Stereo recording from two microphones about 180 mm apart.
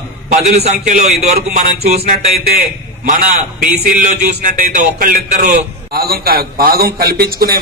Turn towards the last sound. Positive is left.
turn(degrees=-55)  # may be behind; listen again after turning